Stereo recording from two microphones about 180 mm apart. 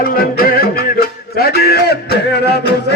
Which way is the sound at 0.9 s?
60° left (ahead or behind).